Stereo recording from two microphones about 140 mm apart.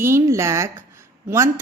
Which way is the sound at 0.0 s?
20° right (ahead or behind).